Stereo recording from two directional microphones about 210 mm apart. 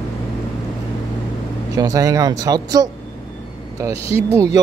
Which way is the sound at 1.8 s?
15° right (ahead or behind).